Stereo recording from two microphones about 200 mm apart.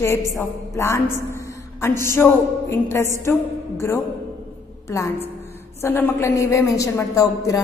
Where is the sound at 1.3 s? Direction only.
15° left (ahead or behind).